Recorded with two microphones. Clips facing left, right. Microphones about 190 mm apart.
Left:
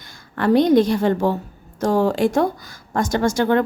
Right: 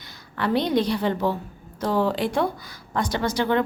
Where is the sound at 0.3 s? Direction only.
45° left (ahead or behind).